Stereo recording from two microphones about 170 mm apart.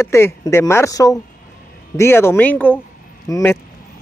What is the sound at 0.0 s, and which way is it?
Speech, 15° left (ahead or behind).